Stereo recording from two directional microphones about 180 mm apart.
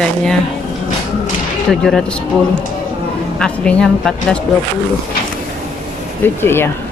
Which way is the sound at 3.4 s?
5° left (ahead or behind).